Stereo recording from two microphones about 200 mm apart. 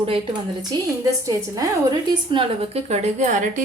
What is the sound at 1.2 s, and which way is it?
A woman's voice, 20° right (ahead or behind).